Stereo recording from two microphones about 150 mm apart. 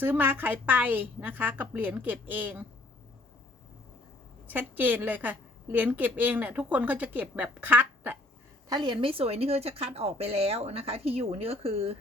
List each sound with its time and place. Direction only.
0.0 s a woman's voice: 15° right (ahead or behind)
4.4 s a woman's voice: 10° right (ahead or behind)
8.7 s a woman's voice: 30° right (ahead or behind)